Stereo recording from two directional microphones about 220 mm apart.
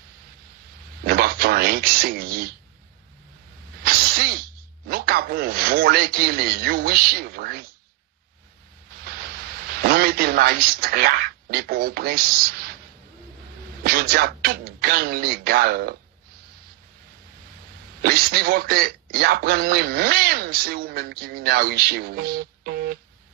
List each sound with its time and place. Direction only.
1.0 s a sound: 45° right (ahead or behind)
4.8 s speech: 45° right (ahead or behind)
9.8 s speech: 45° right (ahead or behind)
13.8 s speech: 45° right (ahead or behind)
18.0 s speech: 45° right (ahead or behind)